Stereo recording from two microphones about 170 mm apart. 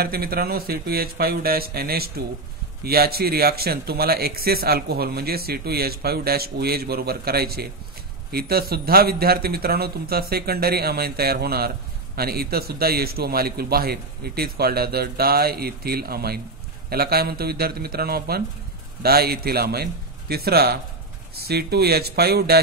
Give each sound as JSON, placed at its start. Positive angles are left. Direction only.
{"t": 0.0, "sound": "a man's voice", "side_deg": -65}